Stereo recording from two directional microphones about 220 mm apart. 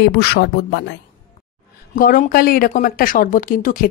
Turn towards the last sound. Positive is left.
turn(degrees=40)  # may be behind; listen again after turning